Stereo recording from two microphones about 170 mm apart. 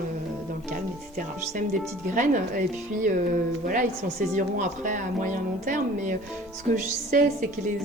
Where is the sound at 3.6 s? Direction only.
50° right (ahead or behind).